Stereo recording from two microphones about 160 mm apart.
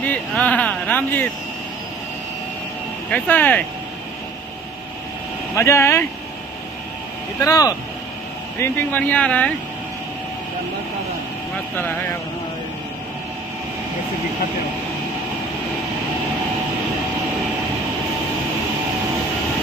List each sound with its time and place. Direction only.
0.0 s a sound: 10° left (ahead or behind)
3.1 s speech: 10° left (ahead or behind)
5.6 s speech: 20° left (ahead or behind)
7.4 s speech: 20° left (ahead or behind)
11.7 s speech: 10° left (ahead or behind)